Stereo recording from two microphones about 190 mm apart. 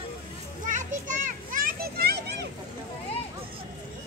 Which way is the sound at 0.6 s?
40° right (ahead or behind).